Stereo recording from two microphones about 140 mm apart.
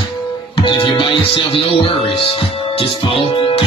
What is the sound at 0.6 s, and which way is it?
Speech, 35° left (ahead or behind).